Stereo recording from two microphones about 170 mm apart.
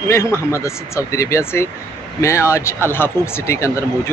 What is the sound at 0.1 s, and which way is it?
Speech, 15° left (ahead or behind).